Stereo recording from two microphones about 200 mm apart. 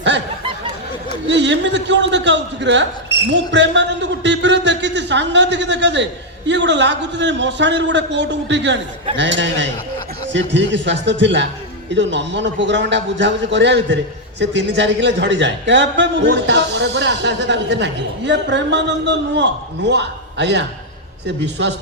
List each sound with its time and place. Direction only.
1.3 s a man's voice: 65° right (ahead or behind)